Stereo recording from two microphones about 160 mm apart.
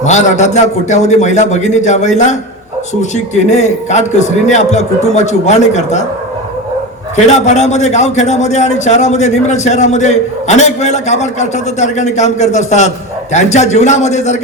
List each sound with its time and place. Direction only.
0.0 s a man's voice: 45° left (ahead or behind)
7.3 s a man's voice: 45° left (ahead or behind)